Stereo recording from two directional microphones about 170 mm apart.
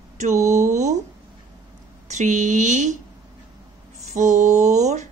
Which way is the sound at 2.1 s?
45° right (ahead or behind).